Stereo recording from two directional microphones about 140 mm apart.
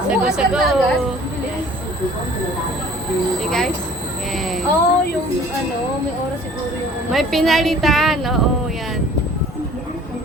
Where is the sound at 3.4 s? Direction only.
5° left (ahead or behind).